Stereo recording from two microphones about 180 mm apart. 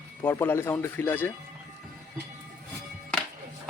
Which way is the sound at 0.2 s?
10° left (ahead or behind).